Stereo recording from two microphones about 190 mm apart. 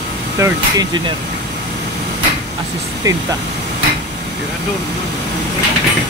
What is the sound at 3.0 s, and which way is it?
Speech, 15° right (ahead or behind).